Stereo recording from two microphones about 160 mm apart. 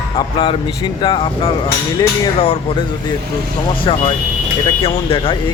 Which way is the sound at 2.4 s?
40° left (ahead or behind).